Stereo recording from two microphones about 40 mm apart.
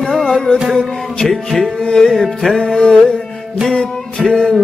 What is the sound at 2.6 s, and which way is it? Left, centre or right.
Music, centre.